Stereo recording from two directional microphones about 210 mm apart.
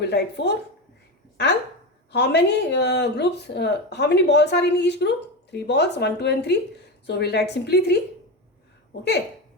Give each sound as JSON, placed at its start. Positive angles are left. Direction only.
{"t": 0.1, "sound": "speech", "side_deg": 50}
{"t": 2.1, "sound": "speech", "side_deg": 55}